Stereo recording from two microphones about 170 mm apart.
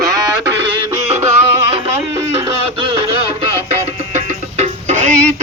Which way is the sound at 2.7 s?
30° right (ahead or behind).